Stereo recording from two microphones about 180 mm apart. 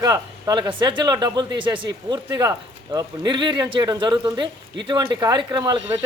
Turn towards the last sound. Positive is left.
turn(degrees=-20)  # may be behind; listen again after turning